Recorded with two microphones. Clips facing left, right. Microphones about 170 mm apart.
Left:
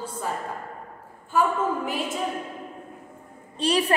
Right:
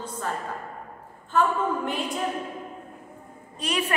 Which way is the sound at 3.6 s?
35° left (ahead or behind).